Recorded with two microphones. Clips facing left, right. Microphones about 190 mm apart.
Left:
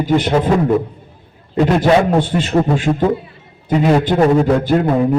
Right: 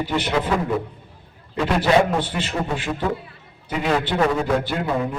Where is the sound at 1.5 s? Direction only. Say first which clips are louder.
Left 5 dB; 50° left (ahead or behind).